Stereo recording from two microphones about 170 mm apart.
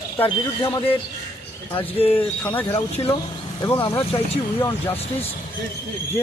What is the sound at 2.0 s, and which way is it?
Speech, 35° left (ahead or behind).